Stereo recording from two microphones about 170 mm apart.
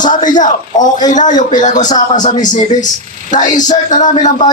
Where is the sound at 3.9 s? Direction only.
50° left (ahead or behind).